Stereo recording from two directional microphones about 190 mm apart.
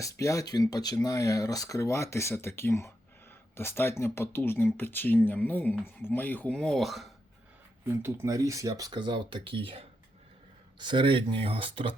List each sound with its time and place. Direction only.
0.0 s speech: 15° left (ahead or behind); by 7.1 s centre (ahead or behind)
8.0 s speech: 15° right (ahead or behind)